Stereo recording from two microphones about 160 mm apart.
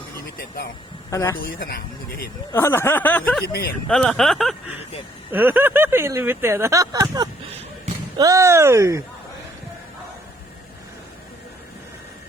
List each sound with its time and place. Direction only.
0.3 s speech: 70° left (ahead or behind)
1.1 s a woman's voice: 20° left (ahead or behind)
1.4 s speech: 70° left (ahead or behind)
2.5 s speech: 15° left (ahead or behind)
3.4 s speech: 70° left (ahead or behind)
3.8 s speech: centre (ahead or behind)
5.3 s speech: 10° right (ahead or behind)